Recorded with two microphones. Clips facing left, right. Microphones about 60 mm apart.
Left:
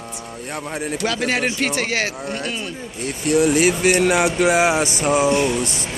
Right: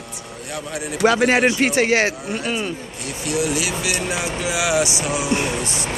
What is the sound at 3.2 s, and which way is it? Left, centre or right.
Speech, left.